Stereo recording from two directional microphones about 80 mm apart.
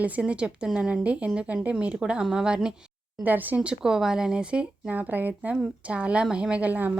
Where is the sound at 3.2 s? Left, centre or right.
Right.